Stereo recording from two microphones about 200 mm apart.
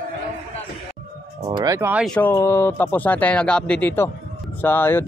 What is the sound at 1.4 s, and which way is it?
Speech, 20° right (ahead or behind).